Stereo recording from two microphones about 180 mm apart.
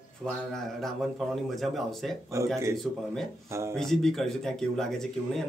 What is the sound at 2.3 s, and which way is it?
A man's voice, 15° right (ahead or behind).